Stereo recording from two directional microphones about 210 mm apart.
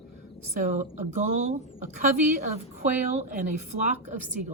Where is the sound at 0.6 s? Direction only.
35° right (ahead or behind).